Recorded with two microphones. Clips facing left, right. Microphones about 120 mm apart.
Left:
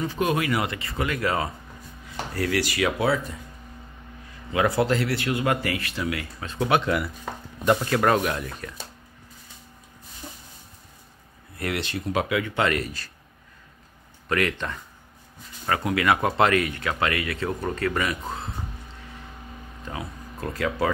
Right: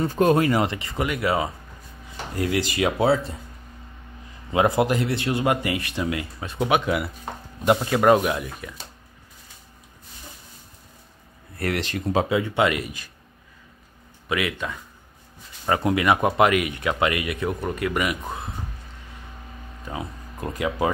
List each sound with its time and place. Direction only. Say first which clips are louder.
0.0 s speech: right 6 dB; 45° right (ahead or behind)
0.7 s a man's voice: right 2 dB; 20° right (ahead or behind)
4.5 s a man's voice: right 2 dB; 20° right (ahead or behind)
11.5 s speech: right 3 dB; 40° right (ahead or behind)
12.5 s speech: right 2 dB; 15° right (ahead or behind)
14.3 s speech: left 1 dB; 5° right (ahead or behind)
15.6 s speech: right 3 dB; 20° right (ahead or behind)
19.9 s speech: right 2 dB; 20° right (ahead or behind)